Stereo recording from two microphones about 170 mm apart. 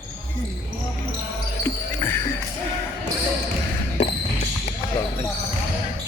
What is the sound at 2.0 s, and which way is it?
Music, 10° left (ahead or behind).